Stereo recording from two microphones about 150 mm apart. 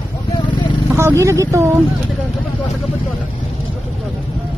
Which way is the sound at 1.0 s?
20° right (ahead or behind).